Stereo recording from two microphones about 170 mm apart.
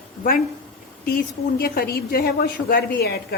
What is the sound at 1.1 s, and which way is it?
A woman's voice, 60° left (ahead or behind).